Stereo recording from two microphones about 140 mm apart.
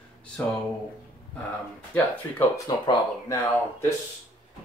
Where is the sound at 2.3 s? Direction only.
25° left (ahead or behind).